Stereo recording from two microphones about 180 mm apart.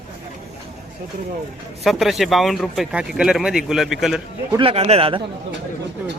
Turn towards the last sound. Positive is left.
turn(degrees=-30)  # may be behind; listen again after turning